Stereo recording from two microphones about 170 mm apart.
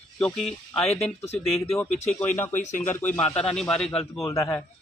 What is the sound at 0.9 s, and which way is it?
Speech, 40° left (ahead or behind).